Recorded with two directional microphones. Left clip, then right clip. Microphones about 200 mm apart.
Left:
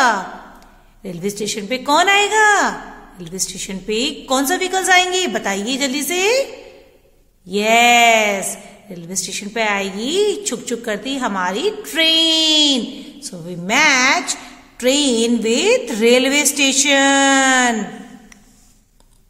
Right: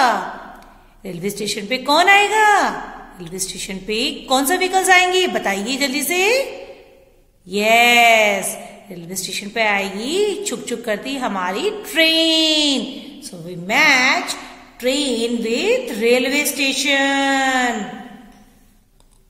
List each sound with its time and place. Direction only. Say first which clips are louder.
1.0 s a woman's voice: left 1 dB; 30° left (ahead or behind)
7.4 s a woman's voice: left 1 dB; 30° left (ahead or behind)